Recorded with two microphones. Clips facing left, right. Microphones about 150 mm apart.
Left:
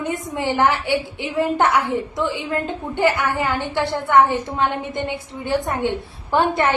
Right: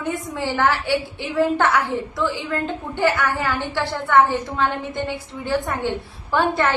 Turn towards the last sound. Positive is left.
turn(degrees=15)  # may be behind; listen again after turning